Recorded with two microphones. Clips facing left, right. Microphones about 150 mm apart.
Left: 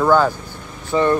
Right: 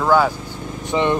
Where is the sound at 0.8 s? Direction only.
20° right (ahead or behind).